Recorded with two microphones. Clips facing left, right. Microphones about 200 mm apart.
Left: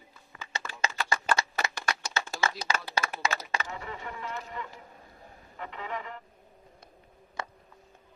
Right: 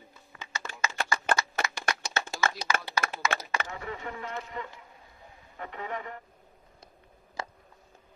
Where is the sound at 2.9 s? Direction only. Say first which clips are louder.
Right 1 dB; 30° left (ahead or behind).